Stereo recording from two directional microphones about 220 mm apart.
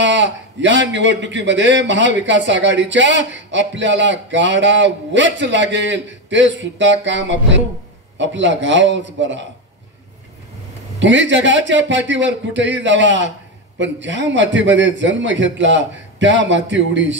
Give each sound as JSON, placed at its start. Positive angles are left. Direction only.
{"t": 0.0, "sound": "a man's voice", "side_deg": -55}
{"t": 11.0, "sound": "a man's voice", "side_deg": -55}